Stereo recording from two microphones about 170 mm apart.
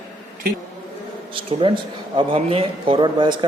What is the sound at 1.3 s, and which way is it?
Speech, 30° right (ahead or behind).